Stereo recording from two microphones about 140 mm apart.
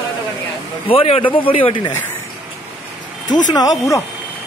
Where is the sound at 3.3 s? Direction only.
30° left (ahead or behind).